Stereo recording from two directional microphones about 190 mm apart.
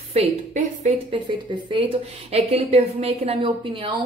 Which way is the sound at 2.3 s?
35° right (ahead or behind).